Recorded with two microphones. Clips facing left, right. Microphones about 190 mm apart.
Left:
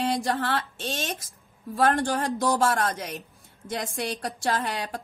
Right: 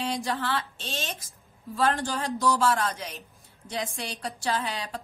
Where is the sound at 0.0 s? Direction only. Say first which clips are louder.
Left 4 dB; 55° left (ahead or behind).